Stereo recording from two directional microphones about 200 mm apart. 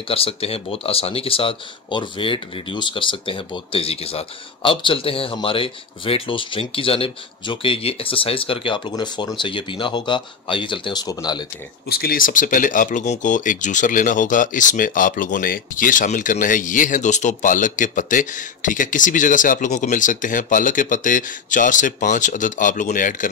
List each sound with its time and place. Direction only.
0.1 s speech: 30° left (ahead or behind)
11.9 s speech: 50° left (ahead or behind)